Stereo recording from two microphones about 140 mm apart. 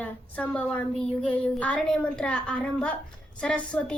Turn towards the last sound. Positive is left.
turn(degrees=10)  # may be behind; listen again after turning